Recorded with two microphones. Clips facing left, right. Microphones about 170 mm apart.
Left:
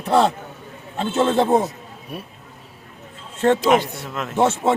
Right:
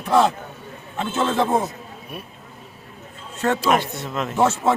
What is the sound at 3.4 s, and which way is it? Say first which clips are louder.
A man's voice: left 4 dB; 20° left (ahead or behind).